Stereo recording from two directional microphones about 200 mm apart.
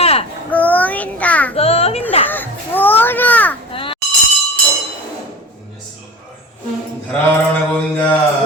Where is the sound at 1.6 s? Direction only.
30° left (ahead or behind).